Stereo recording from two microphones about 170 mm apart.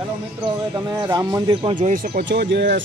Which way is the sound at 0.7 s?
25° right (ahead or behind).